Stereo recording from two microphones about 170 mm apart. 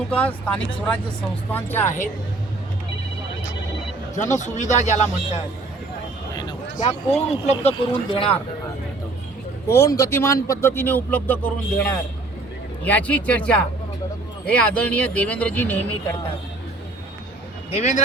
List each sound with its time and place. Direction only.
0.1 s speech: 10° left (ahead or behind)
4.1 s a man's voice: 45° left (ahead or behind)
6.3 s speech: 30° left (ahead or behind)
9.6 s speech: 15° left (ahead or behind)
17.7 s a man's voice: 45° left (ahead or behind)